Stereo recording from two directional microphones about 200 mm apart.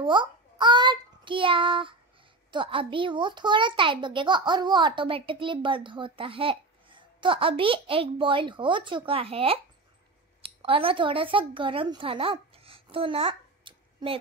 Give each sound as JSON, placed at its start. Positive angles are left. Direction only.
{"t": 0.0, "sound": "a child's voice", "side_deg": -25}